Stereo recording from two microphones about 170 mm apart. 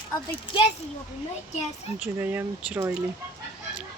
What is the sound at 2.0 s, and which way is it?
Speech, 10° right (ahead or behind).